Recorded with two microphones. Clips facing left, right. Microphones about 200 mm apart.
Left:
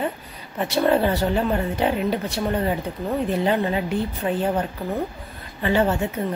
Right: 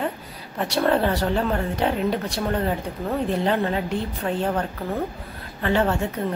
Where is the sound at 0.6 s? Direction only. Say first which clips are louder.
Left 1 dB; centre (ahead or behind).